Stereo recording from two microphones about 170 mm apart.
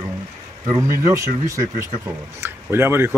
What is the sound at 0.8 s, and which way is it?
Speech, 20° right (ahead or behind).